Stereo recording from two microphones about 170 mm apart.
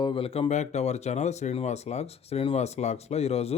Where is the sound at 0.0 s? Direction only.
30° left (ahead or behind).